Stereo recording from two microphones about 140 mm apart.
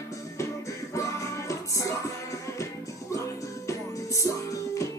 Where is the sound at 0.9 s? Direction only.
20° left (ahead or behind).